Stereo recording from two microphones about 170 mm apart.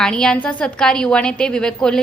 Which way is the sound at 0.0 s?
5° left (ahead or behind).